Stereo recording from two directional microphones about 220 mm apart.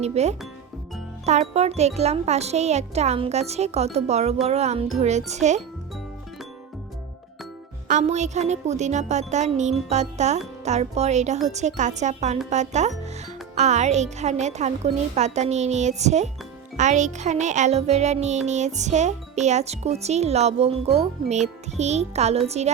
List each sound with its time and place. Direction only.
0.0 s a child's voice: 30° right (ahead or behind)
7.9 s a child's voice: 30° right (ahead or behind)